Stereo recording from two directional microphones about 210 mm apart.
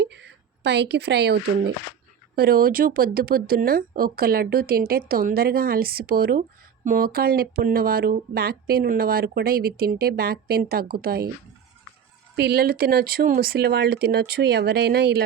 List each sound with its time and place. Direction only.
0.0 s speech: 55° right (ahead or behind)
12.4 s speech: 50° right (ahead or behind)